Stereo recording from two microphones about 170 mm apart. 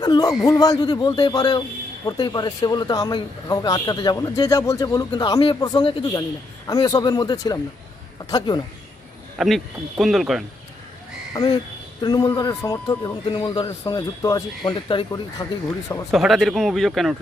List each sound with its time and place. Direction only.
0.0 s speech: 20° left (ahead or behind)
9.4 s speech: centre (ahead or behind)
11.3 s speech: 25° left (ahead or behind)
16.1 s speech: centre (ahead or behind)